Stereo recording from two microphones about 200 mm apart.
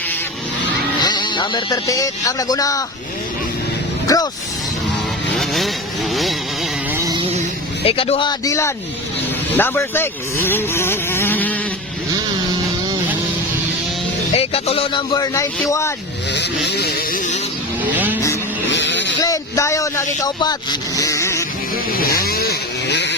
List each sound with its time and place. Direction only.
1.0 s speech: 20° left (ahead or behind)
4.0 s speech: 20° left (ahead or behind)
5.4 s vehicle: centre (ahead or behind)
6.9 s music: 15° right (ahead or behind)
7.9 s speech: 30° left (ahead or behind); by 11.5 s 10° left (ahead or behind)
14.3 s speech: 30° left (ahead or behind)
16.3 s vehicle: 55° left (ahead or behind)
17.9 s vehicle: 10° right (ahead or behind)
18.7 s vehicle: 65° left (ahead or behind)
19.2 s speech: 15° left (ahead or behind)
22.2 s vehicle: 50° left (ahead or behind)